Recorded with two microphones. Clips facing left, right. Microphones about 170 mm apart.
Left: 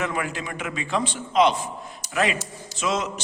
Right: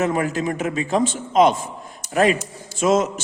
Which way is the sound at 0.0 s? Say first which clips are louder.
Right 7 dB; 40° right (ahead or behind).